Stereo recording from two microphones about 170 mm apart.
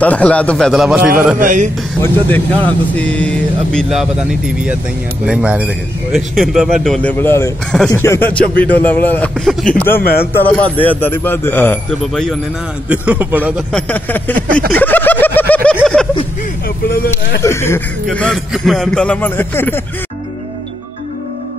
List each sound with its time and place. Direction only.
0.0 s speech: 10° left (ahead or behind); by 1.4 s 5° right (ahead or behind)
1.4 s a sound: 50° right (ahead or behind)
2.0 s a man's voice: 10° left (ahead or behind)
7.7 s speech: 5° left (ahead or behind)
12.8 s a man's voice: 10° right (ahead or behind)
13.7 s speech: 5° left (ahead or behind)
14.3 s a sound: 55° right (ahead or behind)
14.7 s a sound: 10° left (ahead or behind)
17.4 s speech: 15° left (ahead or behind)
18.0 s speech: 5° left (ahead or behind)